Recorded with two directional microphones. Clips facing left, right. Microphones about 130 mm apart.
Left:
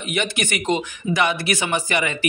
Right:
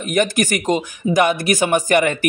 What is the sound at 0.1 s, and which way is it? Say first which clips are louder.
Speech: right 7 dB; 45° right (ahead or behind).